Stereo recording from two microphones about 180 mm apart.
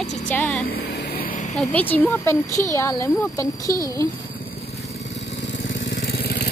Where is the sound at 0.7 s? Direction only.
60° left (ahead or behind).